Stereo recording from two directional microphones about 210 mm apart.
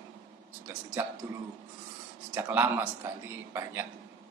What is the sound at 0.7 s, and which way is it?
Speech, 10° right (ahead or behind).